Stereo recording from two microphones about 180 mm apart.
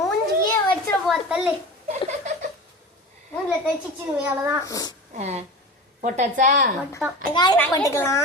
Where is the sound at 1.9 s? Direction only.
40° right (ahead or behind).